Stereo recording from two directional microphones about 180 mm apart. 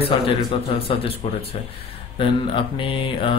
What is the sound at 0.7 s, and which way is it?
Speech, 30° left (ahead or behind).